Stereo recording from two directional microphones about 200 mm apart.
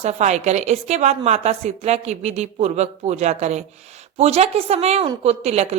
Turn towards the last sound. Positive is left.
turn(degrees=-30)  # may be behind; listen again after turning